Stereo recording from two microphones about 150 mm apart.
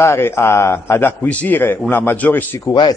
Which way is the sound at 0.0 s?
15° left (ahead or behind).